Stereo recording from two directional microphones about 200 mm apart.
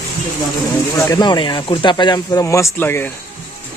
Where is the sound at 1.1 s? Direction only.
20° left (ahead or behind).